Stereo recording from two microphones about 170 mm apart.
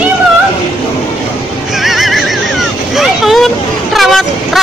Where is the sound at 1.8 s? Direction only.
Centre (ahead or behind).